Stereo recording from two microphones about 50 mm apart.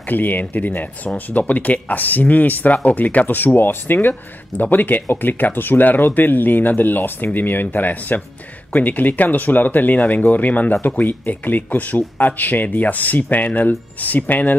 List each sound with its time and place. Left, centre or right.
0.0 s speech: left